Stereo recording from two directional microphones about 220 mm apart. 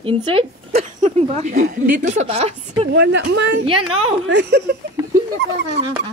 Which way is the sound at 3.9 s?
70° right (ahead or behind).